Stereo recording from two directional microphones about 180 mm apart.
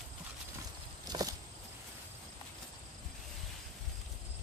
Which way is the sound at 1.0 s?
20° right (ahead or behind).